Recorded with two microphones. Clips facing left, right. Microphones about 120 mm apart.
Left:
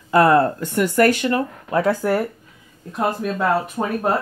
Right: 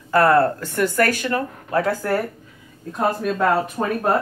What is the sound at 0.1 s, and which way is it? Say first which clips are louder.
Speech: left 1 dB; 20° left (ahead or behind).